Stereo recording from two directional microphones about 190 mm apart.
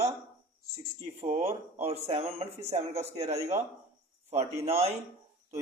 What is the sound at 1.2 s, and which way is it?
A man's voice, 35° right (ahead or behind).